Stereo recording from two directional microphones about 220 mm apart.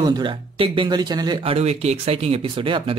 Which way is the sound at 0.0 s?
20° right (ahead or behind).